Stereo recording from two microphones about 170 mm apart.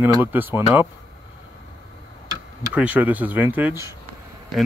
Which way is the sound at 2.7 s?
10° right (ahead or behind).